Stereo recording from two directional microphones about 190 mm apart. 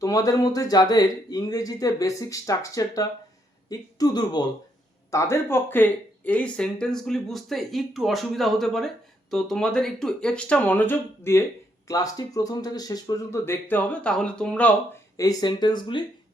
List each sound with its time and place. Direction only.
0.0 s speech: 15° left (ahead or behind)
15.1 s speech: 20° left (ahead or behind)